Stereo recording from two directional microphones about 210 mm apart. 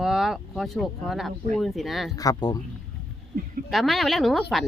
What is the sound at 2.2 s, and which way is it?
Speech, 15° left (ahead or behind).